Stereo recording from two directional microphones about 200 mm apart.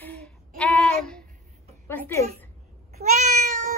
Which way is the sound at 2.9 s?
40° right (ahead or behind).